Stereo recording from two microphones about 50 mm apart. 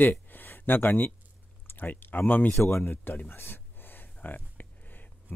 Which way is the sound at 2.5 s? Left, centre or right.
Left.